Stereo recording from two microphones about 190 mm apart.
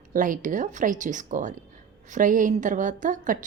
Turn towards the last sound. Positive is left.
turn(degrees=-45)  # may be behind; listen again after turning